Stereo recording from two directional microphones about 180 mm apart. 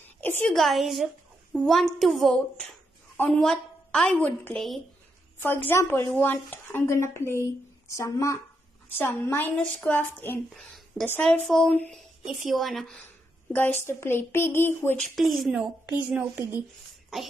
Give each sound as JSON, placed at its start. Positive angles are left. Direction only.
{"t": 0.2, "sound": "a woman's voice", "side_deg": 10}
{"t": 15.1, "sound": "a woman's voice", "side_deg": 0}